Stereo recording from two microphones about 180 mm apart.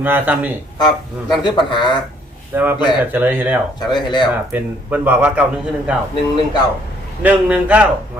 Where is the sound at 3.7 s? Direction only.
25° left (ahead or behind).